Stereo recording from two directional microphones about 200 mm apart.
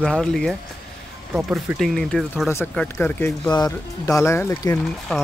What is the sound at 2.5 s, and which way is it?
Speech, 10° left (ahead or behind).